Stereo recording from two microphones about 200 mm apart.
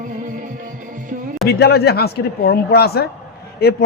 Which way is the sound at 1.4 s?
50° left (ahead or behind).